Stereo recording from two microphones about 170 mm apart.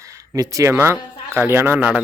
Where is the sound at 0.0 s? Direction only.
20° right (ahead or behind).